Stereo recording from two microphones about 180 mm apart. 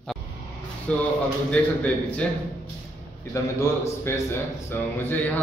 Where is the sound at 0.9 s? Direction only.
5° left (ahead or behind).